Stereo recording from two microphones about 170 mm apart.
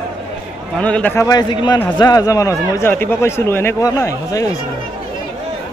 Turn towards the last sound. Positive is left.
turn(degrees=20)  # may be behind; listen again after turning